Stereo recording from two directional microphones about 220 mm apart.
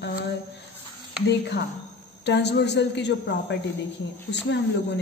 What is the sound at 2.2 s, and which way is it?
A woman's voice, 50° left (ahead or behind).